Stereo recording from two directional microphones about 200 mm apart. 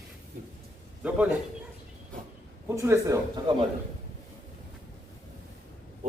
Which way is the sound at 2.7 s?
15° right (ahead or behind).